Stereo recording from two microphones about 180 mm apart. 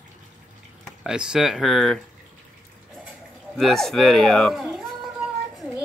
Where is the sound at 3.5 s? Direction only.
Centre (ahead or behind).